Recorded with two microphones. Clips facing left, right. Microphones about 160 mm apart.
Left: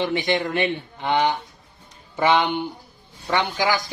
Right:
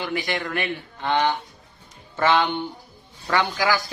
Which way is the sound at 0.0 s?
25° left (ahead or behind).